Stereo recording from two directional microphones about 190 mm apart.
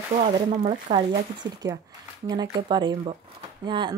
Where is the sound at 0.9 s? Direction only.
25° right (ahead or behind).